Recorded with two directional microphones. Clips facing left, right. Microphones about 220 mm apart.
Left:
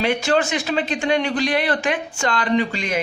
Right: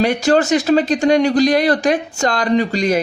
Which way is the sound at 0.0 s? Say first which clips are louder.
Right 5 dB; 40° right (ahead or behind).